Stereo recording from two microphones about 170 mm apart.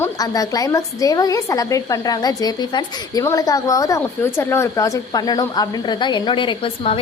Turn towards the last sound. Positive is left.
turn(degrees=30)  # may be behind; listen again after turning